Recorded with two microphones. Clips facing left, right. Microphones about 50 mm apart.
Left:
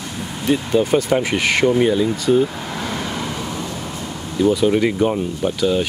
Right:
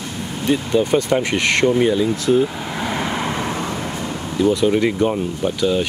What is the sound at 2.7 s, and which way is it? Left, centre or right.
Vehicle, centre.